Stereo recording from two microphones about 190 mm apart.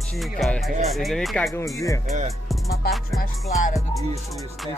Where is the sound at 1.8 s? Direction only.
15° left (ahead or behind).